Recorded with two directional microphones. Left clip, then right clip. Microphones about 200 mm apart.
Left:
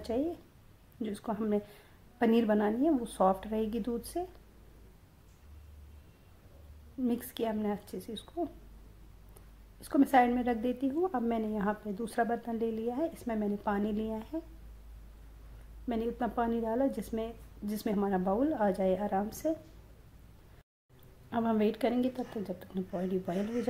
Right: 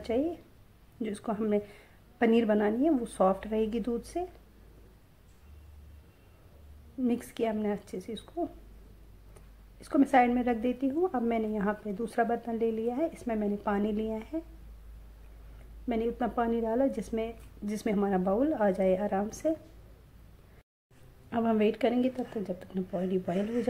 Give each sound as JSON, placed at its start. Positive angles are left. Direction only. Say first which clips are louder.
{"t": 0.0, "sound": "a woman's voice", "louder": "right 3 dB", "side_deg": -15}
{"t": 7.1, "sound": "a woman's voice", "louder": "right 3 dB", "side_deg": -20}
{"t": 9.8, "sound": "a woman's voice", "louder": "right 1 dB", "side_deg": -20}
{"t": 15.9, "sound": "a woman's voice", "louder": "right 3 dB", "side_deg": -15}
{"t": 21.3, "sound": "a woman's voice", "louder": "right 3 dB", "side_deg": -15}